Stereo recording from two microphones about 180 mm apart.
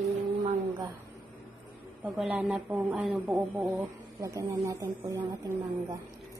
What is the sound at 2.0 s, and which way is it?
Speech, 10° right (ahead or behind).